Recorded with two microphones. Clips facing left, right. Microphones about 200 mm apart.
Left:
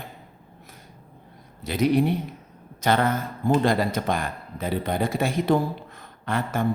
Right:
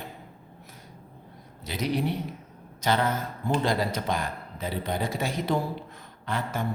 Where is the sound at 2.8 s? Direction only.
55° left (ahead or behind).